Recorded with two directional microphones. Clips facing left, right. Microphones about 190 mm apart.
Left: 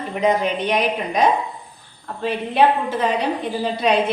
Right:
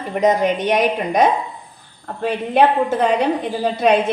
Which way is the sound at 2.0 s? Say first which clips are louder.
Right 2 dB; 50° right (ahead or behind).